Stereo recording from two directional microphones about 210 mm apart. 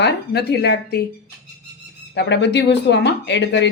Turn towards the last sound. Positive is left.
turn(degrees=55)  # may be behind; listen again after turning